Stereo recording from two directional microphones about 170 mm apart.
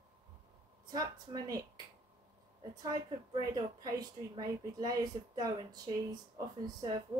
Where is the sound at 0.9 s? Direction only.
25° right (ahead or behind).